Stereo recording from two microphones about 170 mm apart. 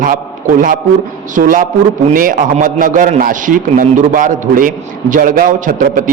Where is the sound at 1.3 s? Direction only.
55° right (ahead or behind).